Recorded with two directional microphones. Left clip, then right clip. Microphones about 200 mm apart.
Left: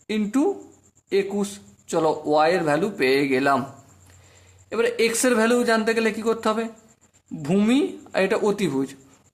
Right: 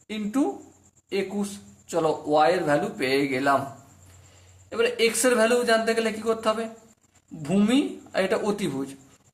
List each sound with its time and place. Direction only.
0.1 s speech: 40° left (ahead or behind)
4.7 s speech: 35° left (ahead or behind)